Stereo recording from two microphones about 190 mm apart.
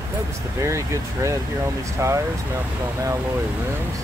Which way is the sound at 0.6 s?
15° right (ahead or behind).